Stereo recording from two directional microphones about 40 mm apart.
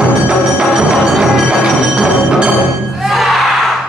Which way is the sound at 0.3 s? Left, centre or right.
Centre.